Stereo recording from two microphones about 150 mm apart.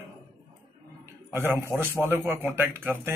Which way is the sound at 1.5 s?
15° right (ahead or behind).